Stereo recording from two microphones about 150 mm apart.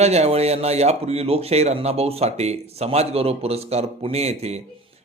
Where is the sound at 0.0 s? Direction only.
45° right (ahead or behind).